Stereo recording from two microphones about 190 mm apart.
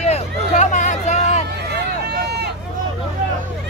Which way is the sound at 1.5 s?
60° right (ahead or behind).